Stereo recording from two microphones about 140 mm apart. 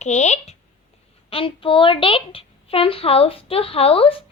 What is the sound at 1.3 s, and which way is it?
A woman's voice, 40° left (ahead or behind).